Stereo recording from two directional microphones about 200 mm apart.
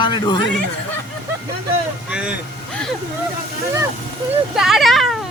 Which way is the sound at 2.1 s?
5° right (ahead or behind).